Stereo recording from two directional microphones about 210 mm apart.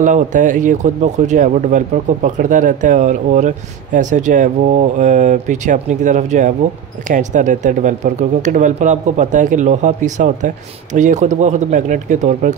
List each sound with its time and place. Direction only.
0.0 s speech: 35° right (ahead or behind)